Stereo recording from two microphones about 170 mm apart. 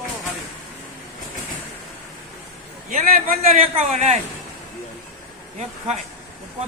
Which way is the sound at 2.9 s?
50° right (ahead or behind).